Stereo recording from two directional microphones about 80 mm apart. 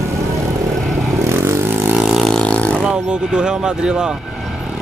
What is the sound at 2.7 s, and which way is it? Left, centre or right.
Speech, centre.